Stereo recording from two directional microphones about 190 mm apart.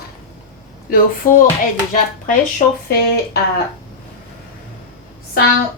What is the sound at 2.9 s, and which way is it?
Speech, 55° left (ahead or behind).